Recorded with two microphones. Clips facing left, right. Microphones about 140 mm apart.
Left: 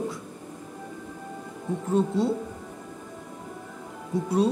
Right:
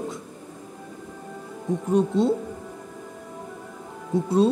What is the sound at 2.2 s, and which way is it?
Speech, 20° right (ahead or behind).